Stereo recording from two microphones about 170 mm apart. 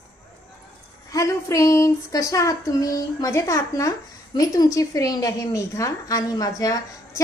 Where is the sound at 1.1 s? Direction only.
20° left (ahead or behind).